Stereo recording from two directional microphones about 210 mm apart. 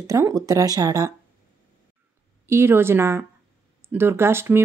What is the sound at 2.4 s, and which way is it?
Speech, 10° right (ahead or behind).